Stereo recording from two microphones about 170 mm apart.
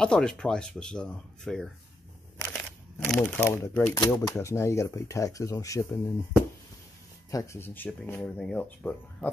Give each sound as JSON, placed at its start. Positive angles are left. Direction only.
{"t": 0.0, "sound": "speech", "side_deg": 5}
{"t": 3.9, "sound": "speech", "side_deg": 20}
{"t": 7.2, "sound": "speech", "side_deg": 20}